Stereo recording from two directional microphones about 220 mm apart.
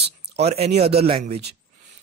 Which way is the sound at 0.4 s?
30° right (ahead or behind).